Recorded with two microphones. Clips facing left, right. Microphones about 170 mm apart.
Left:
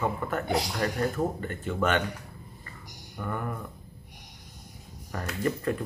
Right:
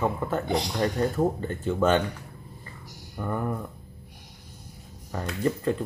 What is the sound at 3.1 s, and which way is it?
Speech, 25° right (ahead or behind).